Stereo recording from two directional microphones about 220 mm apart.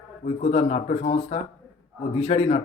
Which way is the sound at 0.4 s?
30° left (ahead or behind).